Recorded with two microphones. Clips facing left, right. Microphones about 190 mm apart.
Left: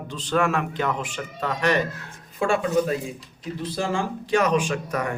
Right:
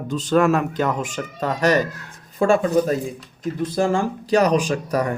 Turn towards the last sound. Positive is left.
turn(degrees=-35)  # may be behind; listen again after turning